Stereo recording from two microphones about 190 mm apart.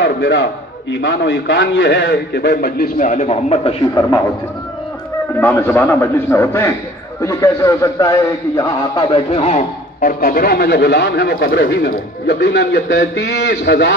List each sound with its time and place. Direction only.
0.0 s a man's voice: 70° left (ahead or behind); by 3.7 s 35° left (ahead or behind)
5.4 s a man's voice: 10° left (ahead or behind); by 13.9 s 65° left (ahead or behind)